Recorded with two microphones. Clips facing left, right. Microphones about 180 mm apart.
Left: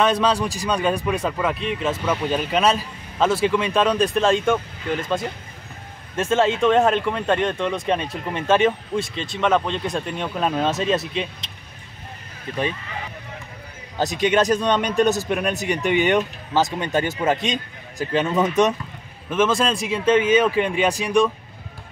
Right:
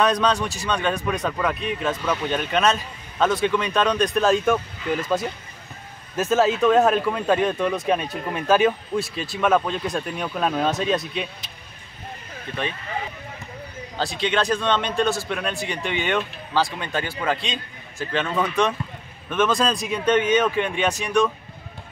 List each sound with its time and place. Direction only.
0.0 s speech: 5° left (ahead or behind)
14.2 s speech: 15° left (ahead or behind)
15.5 s speech: 45° left (ahead or behind)
15.9 s speech: 15° left (ahead or behind)
17.4 s a man's voice: 40° left (ahead or behind)
18.1 s speech: 20° left (ahead or behind)
19.2 s speech: 5° left (ahead or behind)